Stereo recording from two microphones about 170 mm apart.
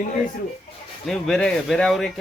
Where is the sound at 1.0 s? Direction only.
Centre (ahead or behind).